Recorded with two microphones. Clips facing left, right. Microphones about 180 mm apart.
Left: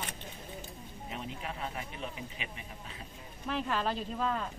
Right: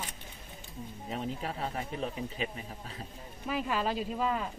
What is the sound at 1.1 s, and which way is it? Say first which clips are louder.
Speech: right 5 dB; 35° right (ahead or behind).